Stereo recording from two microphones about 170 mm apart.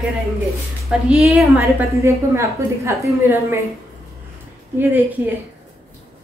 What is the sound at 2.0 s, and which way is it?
A woman's voice, 15° right (ahead or behind).